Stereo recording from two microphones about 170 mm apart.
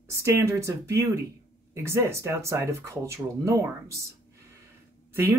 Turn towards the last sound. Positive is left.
turn(degrees=-15)  # may be behind; listen again after turning